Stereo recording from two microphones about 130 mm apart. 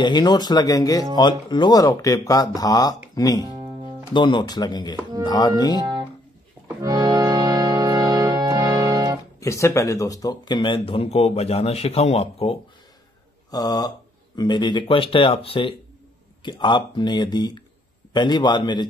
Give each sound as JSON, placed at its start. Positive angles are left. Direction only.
{"t": 0.0, "sound": "speech", "side_deg": 35}
{"t": 3.4, "sound": "music", "side_deg": -30}
{"t": 4.1, "sound": "speech", "side_deg": 35}
{"t": 5.8, "sound": "music", "side_deg": -30}
{"t": 9.4, "sound": "speech", "side_deg": 25}
{"t": 13.5, "sound": "speech", "side_deg": 30}